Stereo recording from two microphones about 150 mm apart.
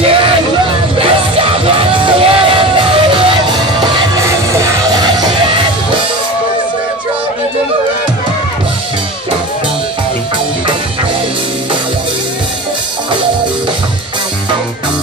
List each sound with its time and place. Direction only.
0.0 s music: 35° right (ahead or behind)